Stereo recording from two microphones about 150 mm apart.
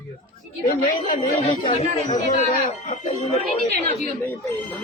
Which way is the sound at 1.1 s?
30° left (ahead or behind).